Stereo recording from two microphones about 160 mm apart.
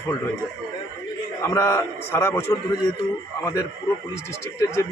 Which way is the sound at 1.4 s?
15° left (ahead or behind).